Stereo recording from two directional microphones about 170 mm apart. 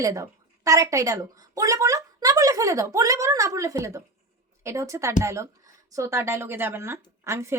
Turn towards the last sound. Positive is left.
turn(degrees=-15)  # may be behind; listen again after turning